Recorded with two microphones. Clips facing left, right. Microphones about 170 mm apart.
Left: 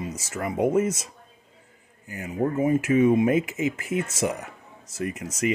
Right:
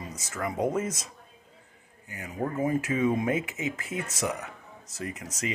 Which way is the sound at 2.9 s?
25° left (ahead or behind).